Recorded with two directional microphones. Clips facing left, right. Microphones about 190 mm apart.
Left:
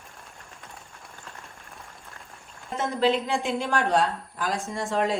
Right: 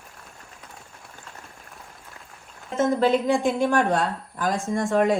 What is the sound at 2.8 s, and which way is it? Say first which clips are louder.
Speech: right 4 dB; 45° right (ahead or behind).